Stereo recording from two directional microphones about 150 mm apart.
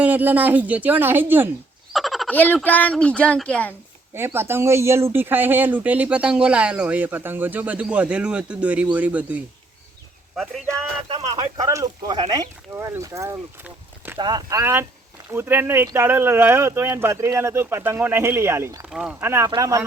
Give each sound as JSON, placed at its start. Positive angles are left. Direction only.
{"t": 0.0, "sound": "speech", "side_deg": -10}
{"t": 1.9, "sound": "frog", "side_deg": 0}
{"t": 2.3, "sound": "speech", "side_deg": 10}
{"t": 4.1, "sound": "speech", "side_deg": -15}
{"t": 11.6, "sound": "speech", "side_deg": -20}
{"t": 13.7, "sound": "a sound", "side_deg": -15}
{"t": 14.2, "sound": "speech", "side_deg": -25}
{"t": 14.6, "sound": "speech", "side_deg": -15}
{"t": 18.9, "sound": "speech", "side_deg": 0}
{"t": 19.2, "sound": "speech", "side_deg": -15}